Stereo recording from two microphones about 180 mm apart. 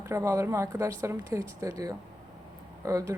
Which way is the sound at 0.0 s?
15° right (ahead or behind).